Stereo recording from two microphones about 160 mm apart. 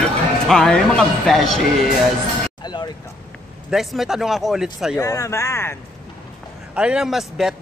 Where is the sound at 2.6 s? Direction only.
25° left (ahead or behind).